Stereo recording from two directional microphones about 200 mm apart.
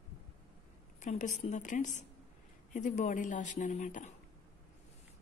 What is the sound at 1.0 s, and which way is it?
A woman's voice, 35° left (ahead or behind).